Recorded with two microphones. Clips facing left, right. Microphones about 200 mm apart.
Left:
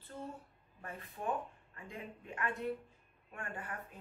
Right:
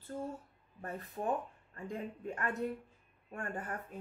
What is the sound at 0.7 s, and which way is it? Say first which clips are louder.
Speech: right 5 dB; 40° right (ahead or behind).